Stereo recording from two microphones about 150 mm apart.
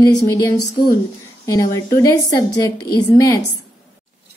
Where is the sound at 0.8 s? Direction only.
90° left.